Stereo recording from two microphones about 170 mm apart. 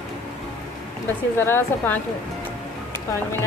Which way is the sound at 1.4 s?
15° left (ahead or behind).